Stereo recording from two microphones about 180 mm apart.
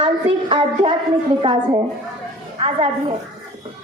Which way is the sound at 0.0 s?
30° right (ahead or behind).